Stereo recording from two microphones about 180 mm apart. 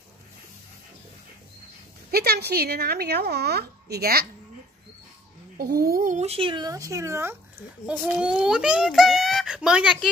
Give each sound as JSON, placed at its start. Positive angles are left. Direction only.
{"t": 2.0, "sound": "speech", "side_deg": -60}
{"t": 5.6, "sound": "a child's voice", "side_deg": -55}